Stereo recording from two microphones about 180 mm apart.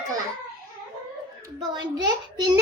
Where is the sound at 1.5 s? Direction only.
20° right (ahead or behind).